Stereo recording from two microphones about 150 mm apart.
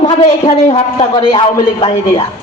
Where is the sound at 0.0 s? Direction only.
40° left (ahead or behind).